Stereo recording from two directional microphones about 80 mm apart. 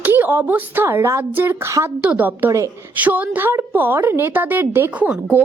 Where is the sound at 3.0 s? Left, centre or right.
Right.